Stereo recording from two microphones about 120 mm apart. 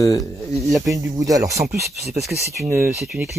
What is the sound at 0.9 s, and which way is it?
Speech, 30° right (ahead or behind).